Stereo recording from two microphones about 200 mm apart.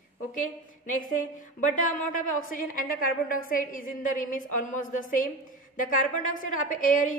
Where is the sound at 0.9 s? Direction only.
40° left (ahead or behind).